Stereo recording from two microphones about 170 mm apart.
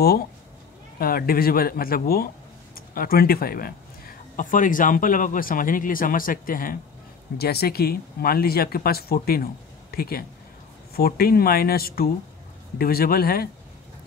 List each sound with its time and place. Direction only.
0.9 s speech: 60° left (ahead or behind)
7.3 s speech: 65° left (ahead or behind)